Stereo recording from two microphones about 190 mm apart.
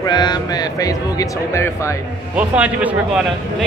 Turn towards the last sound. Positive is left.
turn(degrees=-5)  # may be behind; listen again after turning